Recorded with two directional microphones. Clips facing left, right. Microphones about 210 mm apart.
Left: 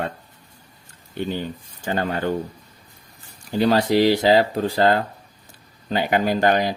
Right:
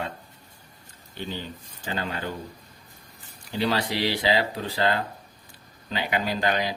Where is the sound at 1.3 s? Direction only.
50° left (ahead or behind).